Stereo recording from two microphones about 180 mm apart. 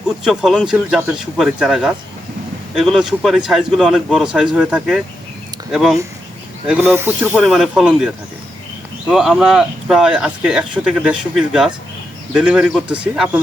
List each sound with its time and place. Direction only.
0.3 s speech: centre (ahead or behind)